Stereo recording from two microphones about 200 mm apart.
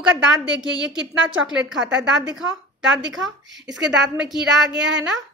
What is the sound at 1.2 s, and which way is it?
Speech, 70° right (ahead or behind).